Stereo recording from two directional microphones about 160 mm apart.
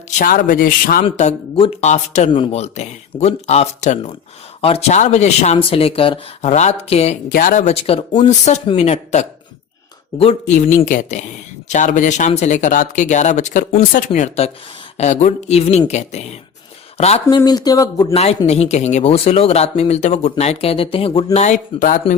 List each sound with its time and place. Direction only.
0.2 s speech: 60° left (ahead or behind)
1.0 s speech: 45° left (ahead or behind)
7.3 s speech: 55° left (ahead or behind)
7.7 s speech: 40° left (ahead or behind); by 14.0 s 55° left (ahead or behind)
14.1 s speech: 40° left (ahead or behind)
17.3 s speech: 25° left (ahead or behind)
18.1 s speech: 40° left (ahead or behind)
21.3 s speech: 45° left (ahead or behind)